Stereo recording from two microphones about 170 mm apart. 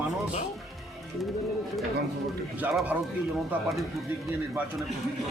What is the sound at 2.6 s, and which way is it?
Speech, 10° right (ahead or behind).